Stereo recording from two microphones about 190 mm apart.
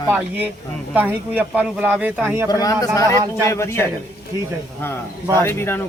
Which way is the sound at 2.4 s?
20° left (ahead or behind).